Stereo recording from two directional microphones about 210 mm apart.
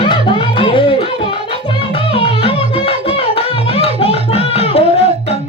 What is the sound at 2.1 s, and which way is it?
Music, 25° left (ahead or behind).